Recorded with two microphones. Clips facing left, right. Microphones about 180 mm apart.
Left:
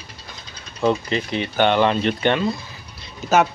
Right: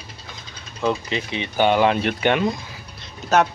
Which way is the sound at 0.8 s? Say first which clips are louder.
Left 3 dB; centre (ahead or behind).